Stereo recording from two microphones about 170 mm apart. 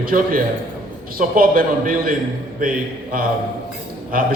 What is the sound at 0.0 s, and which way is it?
A man's voice, 55° right (ahead or behind).